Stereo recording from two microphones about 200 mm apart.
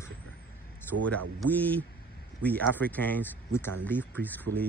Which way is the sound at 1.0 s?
10° left (ahead or behind).